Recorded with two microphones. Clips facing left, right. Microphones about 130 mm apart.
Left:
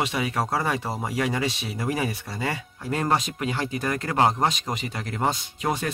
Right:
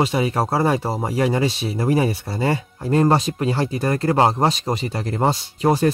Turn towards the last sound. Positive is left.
turn(degrees=-35)  # may be behind; listen again after turning